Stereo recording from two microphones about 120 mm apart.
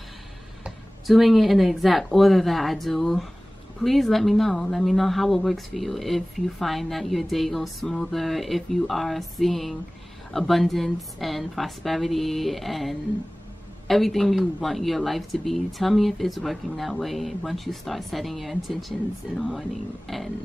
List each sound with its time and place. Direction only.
0.7 s speech: centre (ahead or behind)
20.1 s speech: centre (ahead or behind)